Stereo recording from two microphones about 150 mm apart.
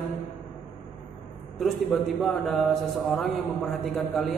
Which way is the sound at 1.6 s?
Centre (ahead or behind).